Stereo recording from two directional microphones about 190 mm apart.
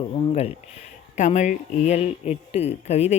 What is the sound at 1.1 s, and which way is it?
Speech, 40° left (ahead or behind).